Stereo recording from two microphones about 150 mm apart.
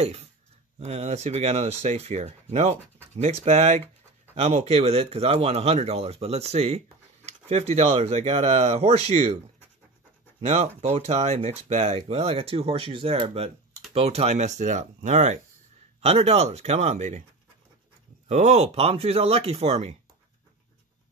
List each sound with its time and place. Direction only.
0.0 s speech: 45° right (ahead or behind)
10.4 s speech: 45° right (ahead or behind)
18.3 s speech: 50° right (ahead or behind)